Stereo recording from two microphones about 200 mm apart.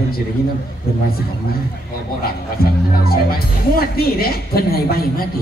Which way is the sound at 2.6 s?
50° left (ahead or behind).